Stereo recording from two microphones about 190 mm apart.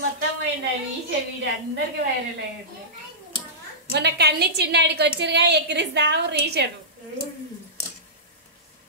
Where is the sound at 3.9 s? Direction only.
60° right (ahead or behind).